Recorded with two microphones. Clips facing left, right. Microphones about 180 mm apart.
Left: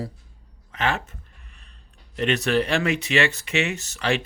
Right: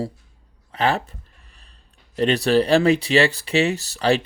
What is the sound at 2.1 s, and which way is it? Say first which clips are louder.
Speech: right 4 dB; 35° right (ahead or behind).